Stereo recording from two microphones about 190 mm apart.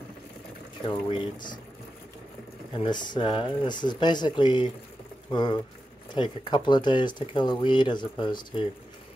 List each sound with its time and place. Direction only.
0.8 s speech: 25° left (ahead or behind)
2.8 s speech: 25° left (ahead or behind)